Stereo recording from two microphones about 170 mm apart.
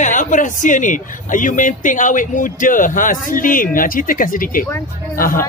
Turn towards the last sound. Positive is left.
turn(degrees=55)  # may be behind; listen again after turning